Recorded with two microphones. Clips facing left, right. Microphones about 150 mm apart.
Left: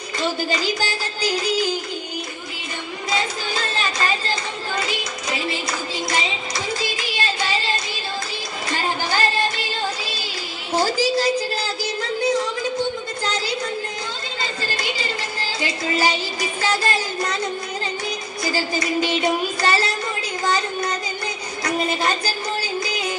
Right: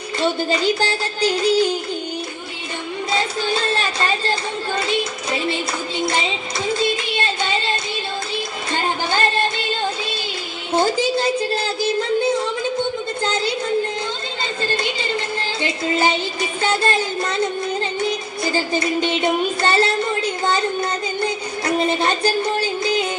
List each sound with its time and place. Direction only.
0.5 s music: 30° right (ahead or behind)
3.1 s music: 30° right (ahead or behind)
5.5 s music: 25° right (ahead or behind)
7.2 s child singing: 25° right (ahead or behind)
8.7 s music: 25° right (ahead or behind)
10.8 s a sound: 25° right (ahead or behind)
15.6 s music: 25° right (ahead or behind)
18.4 s speech: 25° right (ahead or behind)
21.2 s music: 25° right (ahead or behind)